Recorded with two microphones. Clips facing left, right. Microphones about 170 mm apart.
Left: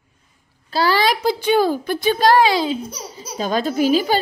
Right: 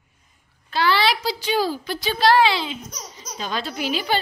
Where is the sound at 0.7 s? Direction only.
40° left (ahead or behind).